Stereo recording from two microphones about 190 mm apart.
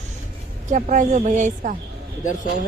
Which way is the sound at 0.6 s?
40° right (ahead or behind).